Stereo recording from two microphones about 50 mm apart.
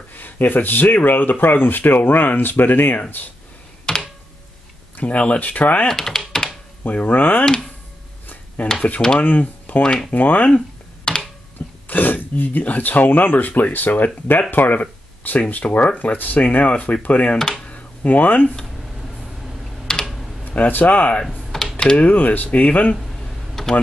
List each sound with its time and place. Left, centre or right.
0.1 s speech: left
3.9 s computer keyboard: centre
4.9 s speech: left
5.9 s typing: centre
6.8 s speech: left
8.6 s speech: left
11.1 s a sound: centre
11.9 s speech: left
17.6 s a sound: left
19.9 s computer keyboard: centre
20.4 s speech: left
21.7 s typing: centre
22.0 s speech: left
23.5 s computer keyboard: centre